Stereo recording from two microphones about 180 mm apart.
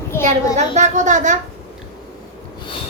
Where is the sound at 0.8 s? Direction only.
40° right (ahead or behind).